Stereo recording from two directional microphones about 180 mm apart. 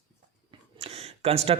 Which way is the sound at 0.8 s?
35° right (ahead or behind).